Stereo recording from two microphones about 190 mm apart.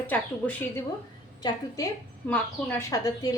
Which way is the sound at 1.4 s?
20° left (ahead or behind).